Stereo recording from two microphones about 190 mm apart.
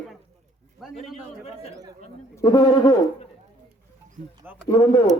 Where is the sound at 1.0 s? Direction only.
Centre (ahead or behind).